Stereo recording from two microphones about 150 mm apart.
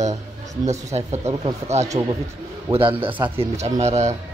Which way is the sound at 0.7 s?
50° right (ahead or behind).